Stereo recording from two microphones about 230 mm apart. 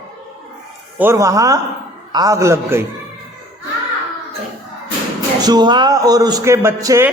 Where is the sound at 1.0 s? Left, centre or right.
Centre.